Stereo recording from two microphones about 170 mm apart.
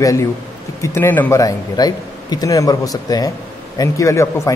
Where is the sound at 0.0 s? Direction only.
20° left (ahead or behind).